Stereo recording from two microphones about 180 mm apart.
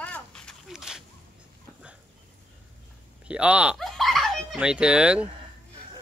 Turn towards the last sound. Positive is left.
turn(degrees=-5)  # may be behind; listen again after turning